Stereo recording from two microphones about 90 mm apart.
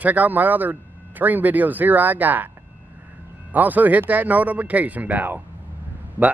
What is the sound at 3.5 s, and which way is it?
Speech, 20° right (ahead or behind).